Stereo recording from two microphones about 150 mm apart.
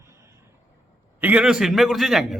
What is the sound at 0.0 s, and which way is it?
Vehicle, 20° right (ahead or behind).